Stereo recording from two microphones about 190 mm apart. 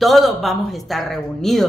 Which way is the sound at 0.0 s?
Centre (ahead or behind).